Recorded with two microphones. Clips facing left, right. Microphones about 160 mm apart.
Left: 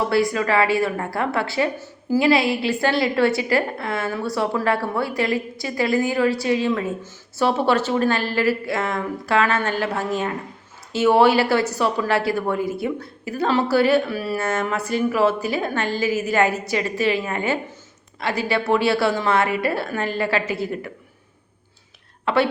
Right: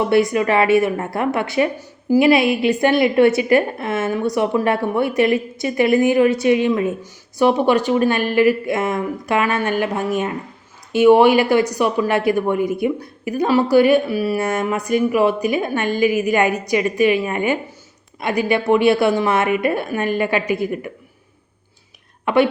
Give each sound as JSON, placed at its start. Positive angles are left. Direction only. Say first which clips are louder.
{"t": 0.1, "sound": "a woman's voice", "louder": "right 4 dB", "side_deg": -20}
{"t": 22.3, "sound": "speech", "louder": "right 4 dB", "side_deg": -20}